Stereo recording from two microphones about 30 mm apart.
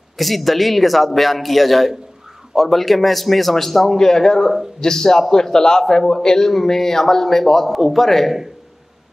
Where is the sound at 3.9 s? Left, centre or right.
Centre.